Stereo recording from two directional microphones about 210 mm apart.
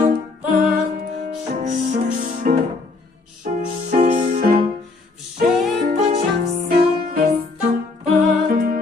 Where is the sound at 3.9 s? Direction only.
35° right (ahead or behind).